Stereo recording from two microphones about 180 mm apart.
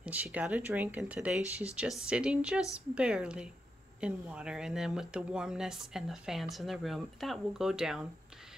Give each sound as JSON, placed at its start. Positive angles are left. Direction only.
{"t": 0.0, "sound": "speech", "side_deg": -10}
{"t": 1.4, "sound": "speech", "side_deg": 15}
{"t": 1.8, "sound": "speech", "side_deg": -5}